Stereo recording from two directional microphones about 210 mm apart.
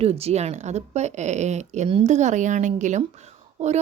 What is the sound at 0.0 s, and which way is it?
A woman's voice, 30° right (ahead or behind).